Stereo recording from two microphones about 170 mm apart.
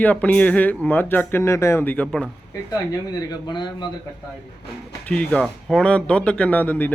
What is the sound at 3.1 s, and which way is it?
Speech, 25° left (ahead or behind).